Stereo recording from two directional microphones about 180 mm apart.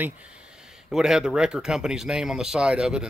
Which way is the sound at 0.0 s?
5° right (ahead or behind).